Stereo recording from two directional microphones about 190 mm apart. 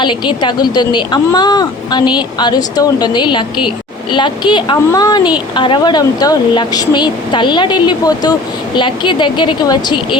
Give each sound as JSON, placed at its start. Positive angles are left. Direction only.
{"t": 0.0, "sound": "speech", "side_deg": 25}